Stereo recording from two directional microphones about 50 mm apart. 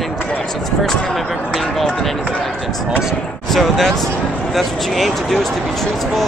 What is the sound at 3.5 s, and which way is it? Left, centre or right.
Speech, centre.